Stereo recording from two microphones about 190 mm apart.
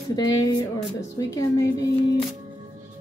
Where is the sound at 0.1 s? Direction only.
20° left (ahead or behind).